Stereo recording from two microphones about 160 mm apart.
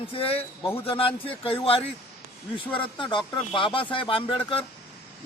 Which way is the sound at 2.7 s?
30° left (ahead or behind).